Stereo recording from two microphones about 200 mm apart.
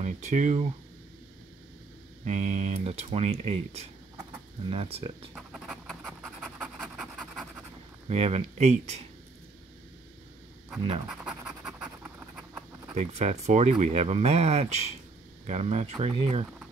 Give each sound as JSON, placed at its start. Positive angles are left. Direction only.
{"t": 0.0, "sound": "speech", "side_deg": -35}
{"t": 2.2, "sound": "speech", "side_deg": -35}
{"t": 5.3, "sound": "pant", "side_deg": -5}
{"t": 8.1, "sound": "speech", "side_deg": -30}
{"t": 11.1, "sound": "scratch", "side_deg": -5}
{"t": 12.9, "sound": "speech", "side_deg": -35}